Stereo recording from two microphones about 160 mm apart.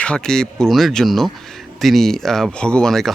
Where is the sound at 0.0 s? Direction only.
5° left (ahead or behind).